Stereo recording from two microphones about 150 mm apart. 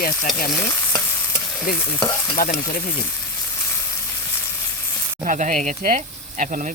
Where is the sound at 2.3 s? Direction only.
65° left (ahead or behind).